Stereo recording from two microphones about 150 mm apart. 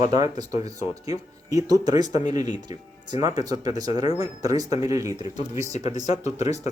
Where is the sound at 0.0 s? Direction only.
30° right (ahead or behind).